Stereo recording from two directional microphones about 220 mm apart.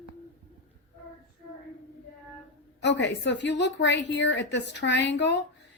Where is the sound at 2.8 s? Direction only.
55° left (ahead or behind).